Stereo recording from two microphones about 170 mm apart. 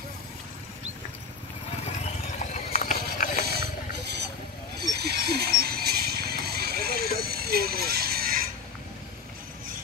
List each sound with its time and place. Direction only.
2.3 s clip-clop: 45° left (ahead or behind)
4.7 s vehicle: 70° right (ahead or behind)